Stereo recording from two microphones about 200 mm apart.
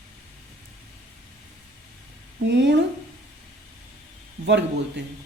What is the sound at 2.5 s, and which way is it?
Speech, 60° right (ahead or behind).